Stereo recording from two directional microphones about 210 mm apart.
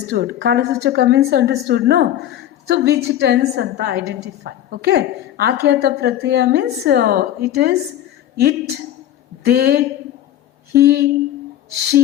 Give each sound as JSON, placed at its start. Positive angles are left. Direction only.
{"t": 0.1, "sound": "a woman's voice", "side_deg": -50}